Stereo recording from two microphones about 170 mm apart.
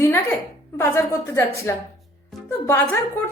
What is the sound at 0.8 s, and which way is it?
A woman's voice, 15° left (ahead or behind).